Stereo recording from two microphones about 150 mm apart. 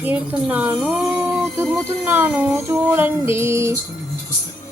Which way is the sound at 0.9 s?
15° right (ahead or behind).